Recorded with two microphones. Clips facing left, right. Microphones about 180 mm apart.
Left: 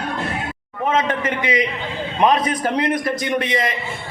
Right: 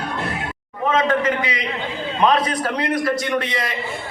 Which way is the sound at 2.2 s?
20° left (ahead or behind).